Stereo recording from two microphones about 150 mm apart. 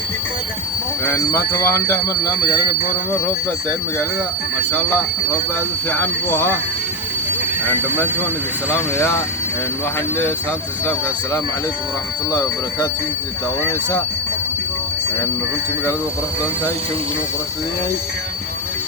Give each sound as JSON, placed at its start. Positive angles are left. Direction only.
{"t": 1.0, "sound": "speech", "side_deg": 15}
{"t": 4.7, "sound": "speech", "side_deg": 10}
{"t": 12.3, "sound": "speech", "side_deg": 20}